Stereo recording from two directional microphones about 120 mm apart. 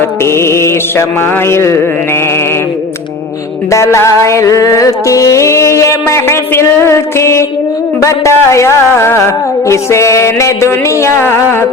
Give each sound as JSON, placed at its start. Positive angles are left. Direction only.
{"t": 0.3, "sound": "music", "side_deg": 20}
{"t": 3.7, "sound": "music", "side_deg": 25}